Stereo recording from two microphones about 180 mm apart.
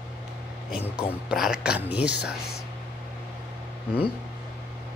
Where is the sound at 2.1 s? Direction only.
65° left (ahead or behind).